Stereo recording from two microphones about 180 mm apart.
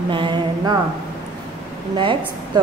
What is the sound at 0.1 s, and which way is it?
Speech, 25° right (ahead or behind).